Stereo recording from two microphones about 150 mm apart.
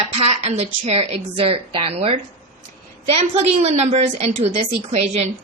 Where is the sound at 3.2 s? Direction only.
45° right (ahead or behind).